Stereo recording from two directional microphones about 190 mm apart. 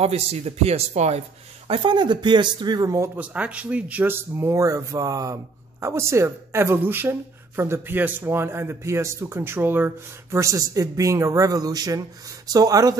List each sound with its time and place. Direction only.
0.0 s speech: 35° right (ahead or behind)